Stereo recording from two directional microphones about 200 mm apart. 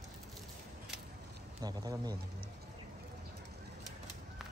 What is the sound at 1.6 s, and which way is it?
Speech, 20° right (ahead or behind).